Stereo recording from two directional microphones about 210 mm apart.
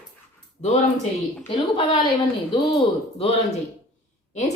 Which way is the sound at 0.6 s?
30° left (ahead or behind).